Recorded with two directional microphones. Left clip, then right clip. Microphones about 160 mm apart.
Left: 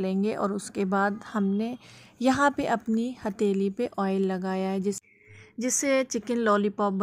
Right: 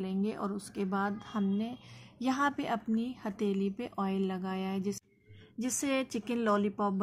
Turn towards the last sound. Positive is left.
turn(degrees=30)  # may be behind; listen again after turning